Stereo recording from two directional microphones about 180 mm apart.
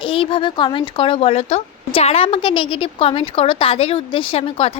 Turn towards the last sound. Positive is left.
turn(degrees=30)  # may be behind; listen again after turning